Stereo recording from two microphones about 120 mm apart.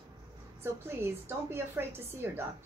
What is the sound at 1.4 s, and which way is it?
Speech, 20° right (ahead or behind).